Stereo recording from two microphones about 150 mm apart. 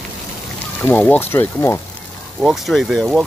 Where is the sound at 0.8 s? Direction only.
15° left (ahead or behind).